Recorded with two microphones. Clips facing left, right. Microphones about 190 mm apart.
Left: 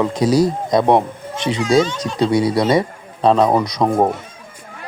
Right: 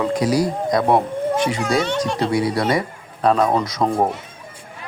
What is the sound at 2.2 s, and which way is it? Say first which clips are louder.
Speech: left 7 dB; 20° left (ahead or behind).